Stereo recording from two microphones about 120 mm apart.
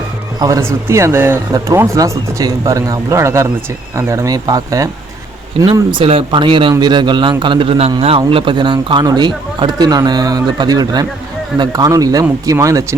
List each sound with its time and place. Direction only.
0.3 s speech: 30° right (ahead or behind)
5.9 s a man's voice: 50° right (ahead or behind); by 13.0 s 25° right (ahead or behind)